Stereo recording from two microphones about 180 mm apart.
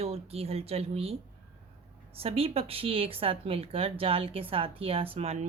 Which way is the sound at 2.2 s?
35° right (ahead or behind).